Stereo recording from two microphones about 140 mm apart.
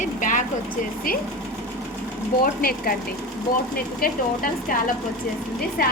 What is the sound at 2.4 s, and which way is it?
Speech, 90° left.